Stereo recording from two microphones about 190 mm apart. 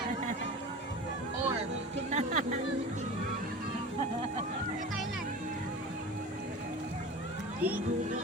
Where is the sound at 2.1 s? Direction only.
35° right (ahead or behind).